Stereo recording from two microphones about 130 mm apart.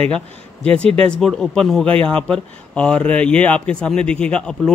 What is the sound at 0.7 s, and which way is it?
Speech, 5° left (ahead or behind).